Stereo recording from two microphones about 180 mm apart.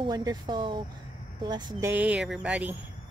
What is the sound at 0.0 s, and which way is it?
Speech, 20° right (ahead or behind).